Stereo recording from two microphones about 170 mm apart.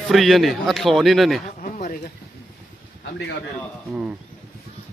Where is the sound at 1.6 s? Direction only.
45° left (ahead or behind).